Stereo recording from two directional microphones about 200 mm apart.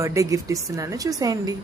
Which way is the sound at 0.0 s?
15° right (ahead or behind).